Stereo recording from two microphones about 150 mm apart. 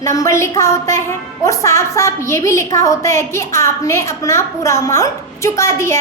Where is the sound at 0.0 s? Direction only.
20° left (ahead or behind).